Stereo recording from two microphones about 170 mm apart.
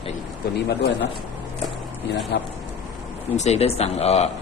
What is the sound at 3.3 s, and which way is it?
Speech, 40° left (ahead or behind).